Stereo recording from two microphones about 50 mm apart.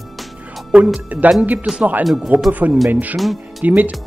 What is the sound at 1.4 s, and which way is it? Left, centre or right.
Speech, right.